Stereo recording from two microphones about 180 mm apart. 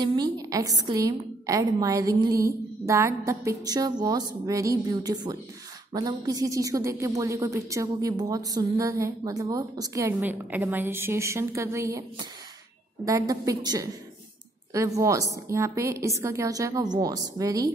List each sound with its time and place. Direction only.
0.0 s a woman's voice: 20° right (ahead or behind)
13.0 s a woman's voice: 20° right (ahead or behind)